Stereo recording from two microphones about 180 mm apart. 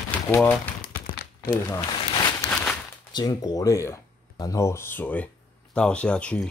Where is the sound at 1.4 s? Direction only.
20° left (ahead or behind).